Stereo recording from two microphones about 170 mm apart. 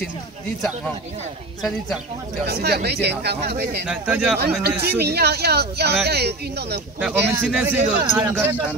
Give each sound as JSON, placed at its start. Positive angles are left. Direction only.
{"t": 2.4, "sound": "speech", "side_deg": -70}
{"t": 3.8, "sound": "a man's voice", "side_deg": -5}
{"t": 4.4, "sound": "speech", "side_deg": -70}
{"t": 7.0, "sound": "a man's voice", "side_deg": -5}